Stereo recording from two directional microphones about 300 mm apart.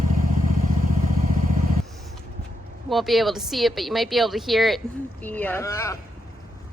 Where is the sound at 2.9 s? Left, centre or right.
Centre.